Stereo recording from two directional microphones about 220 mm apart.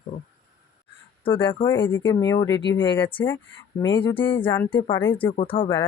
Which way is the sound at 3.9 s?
25° left (ahead or behind).